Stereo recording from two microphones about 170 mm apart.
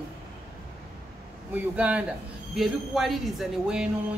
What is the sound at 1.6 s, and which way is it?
A man's voice, 10° right (ahead or behind).